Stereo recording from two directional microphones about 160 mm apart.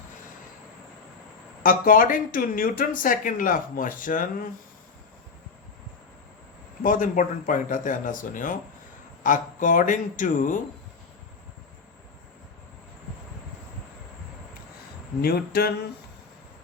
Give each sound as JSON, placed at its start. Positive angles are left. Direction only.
{"t": 1.6, "sound": "speech", "side_deg": 60}
{"t": 6.8, "sound": "speech", "side_deg": 55}
{"t": 15.2, "sound": "a sound", "side_deg": 80}